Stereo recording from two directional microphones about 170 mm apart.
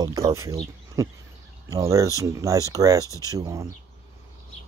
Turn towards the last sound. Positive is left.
turn(degrees=-20)  # may be behind; listen again after turning